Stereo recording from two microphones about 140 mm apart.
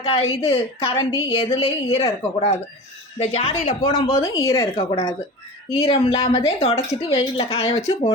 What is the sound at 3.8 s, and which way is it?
Speech, 25° left (ahead or behind).